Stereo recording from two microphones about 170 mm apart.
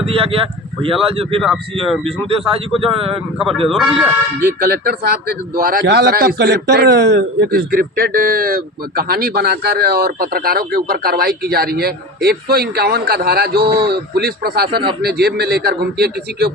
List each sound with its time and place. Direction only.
0.0 s speech: 35° right (ahead or behind)
2.7 s speech: 35° right (ahead or behind)
3.3 s speech: centre (ahead or behind)
4.6 s a man's voice: 70° right (ahead or behind)